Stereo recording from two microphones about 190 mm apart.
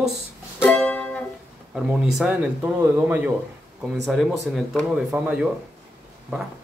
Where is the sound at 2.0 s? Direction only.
5° right (ahead or behind).